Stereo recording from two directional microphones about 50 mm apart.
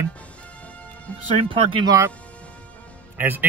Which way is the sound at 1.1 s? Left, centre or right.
Left.